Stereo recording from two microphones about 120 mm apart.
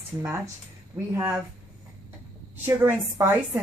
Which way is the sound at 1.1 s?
20° right (ahead or behind).